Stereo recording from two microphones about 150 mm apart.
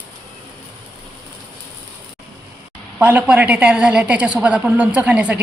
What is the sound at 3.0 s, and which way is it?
A woman's voice, 10° right (ahead or behind).